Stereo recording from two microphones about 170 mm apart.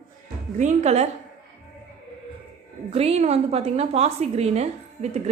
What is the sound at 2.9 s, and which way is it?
A woman's voice, 35° right (ahead or behind).